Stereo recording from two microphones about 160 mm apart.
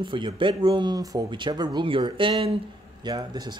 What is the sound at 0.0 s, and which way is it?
Speech, 30° right (ahead or behind).